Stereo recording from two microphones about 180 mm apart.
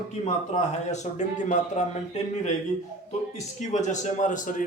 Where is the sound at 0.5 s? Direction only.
40° left (ahead or behind).